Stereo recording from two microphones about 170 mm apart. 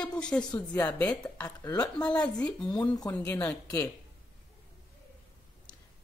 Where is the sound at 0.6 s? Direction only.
10° left (ahead or behind).